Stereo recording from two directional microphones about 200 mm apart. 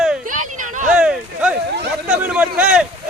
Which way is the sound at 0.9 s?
5° right (ahead or behind).